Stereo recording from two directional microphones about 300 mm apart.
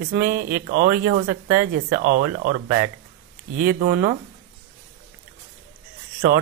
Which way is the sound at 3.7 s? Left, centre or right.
Right.